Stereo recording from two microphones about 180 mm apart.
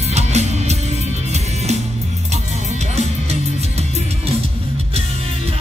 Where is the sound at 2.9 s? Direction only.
40° right (ahead or behind).